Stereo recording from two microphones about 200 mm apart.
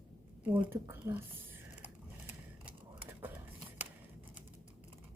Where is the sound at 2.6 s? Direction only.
10° right (ahead or behind).